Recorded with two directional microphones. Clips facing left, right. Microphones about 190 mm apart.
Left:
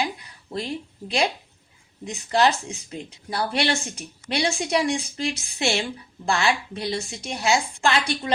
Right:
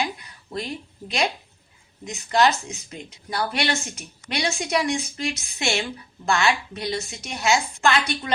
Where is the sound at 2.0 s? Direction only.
30° left (ahead or behind).